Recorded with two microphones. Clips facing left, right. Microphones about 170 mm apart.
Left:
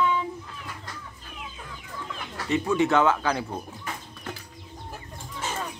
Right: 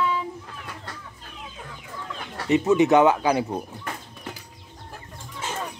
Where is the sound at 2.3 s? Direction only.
20° right (ahead or behind).